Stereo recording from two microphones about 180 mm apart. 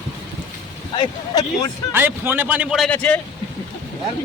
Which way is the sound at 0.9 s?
20° left (ahead or behind).